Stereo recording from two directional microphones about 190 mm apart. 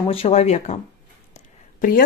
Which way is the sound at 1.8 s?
50° left (ahead or behind).